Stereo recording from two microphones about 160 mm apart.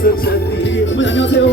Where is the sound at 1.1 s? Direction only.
90° left.